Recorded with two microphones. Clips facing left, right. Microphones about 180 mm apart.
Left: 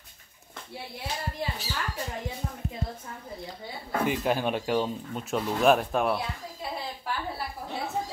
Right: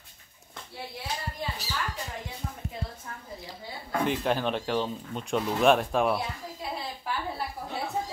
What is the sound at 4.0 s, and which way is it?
Speech, 5° left (ahead or behind).